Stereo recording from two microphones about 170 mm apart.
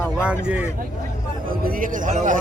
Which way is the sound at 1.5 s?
55° right (ahead or behind).